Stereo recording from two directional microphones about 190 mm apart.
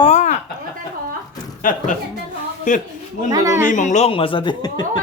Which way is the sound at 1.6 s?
45° left (ahead or behind).